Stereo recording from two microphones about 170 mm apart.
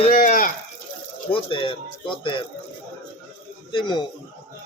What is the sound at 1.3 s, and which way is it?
Speech, 30° left (ahead or behind).